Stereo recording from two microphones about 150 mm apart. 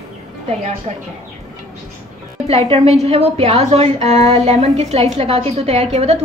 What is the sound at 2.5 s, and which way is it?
A woman's voice, 45° right (ahead or behind).